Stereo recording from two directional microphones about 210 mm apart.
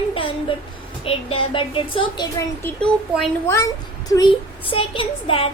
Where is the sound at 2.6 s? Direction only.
5° left (ahead or behind); by 5.5 s 25° left (ahead or behind).